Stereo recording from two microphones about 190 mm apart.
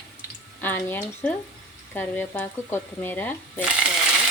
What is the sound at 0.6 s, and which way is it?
Frying, 10° left (ahead or behind).